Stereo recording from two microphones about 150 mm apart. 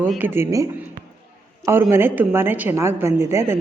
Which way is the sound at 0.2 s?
15° right (ahead or behind).